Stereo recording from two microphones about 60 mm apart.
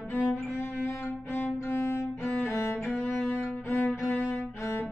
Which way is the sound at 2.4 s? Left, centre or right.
Left.